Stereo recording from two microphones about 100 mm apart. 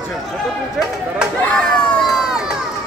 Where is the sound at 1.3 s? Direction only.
10° left (ahead or behind).